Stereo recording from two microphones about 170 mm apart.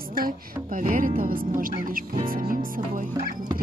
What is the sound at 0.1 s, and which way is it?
Speech, 55° right (ahead or behind).